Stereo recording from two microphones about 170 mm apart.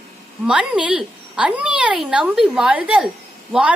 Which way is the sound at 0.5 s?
5° right (ahead or behind).